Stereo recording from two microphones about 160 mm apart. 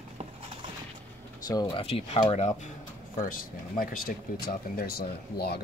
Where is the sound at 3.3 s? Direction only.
60° left (ahead or behind); by 5.6 s 80° left.